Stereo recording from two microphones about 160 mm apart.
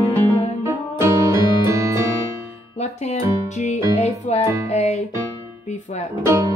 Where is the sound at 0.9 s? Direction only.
15° right (ahead or behind).